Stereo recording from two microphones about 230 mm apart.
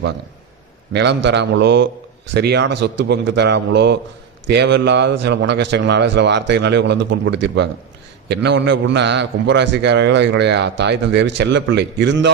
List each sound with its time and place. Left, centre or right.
0.9 s a man's voice: right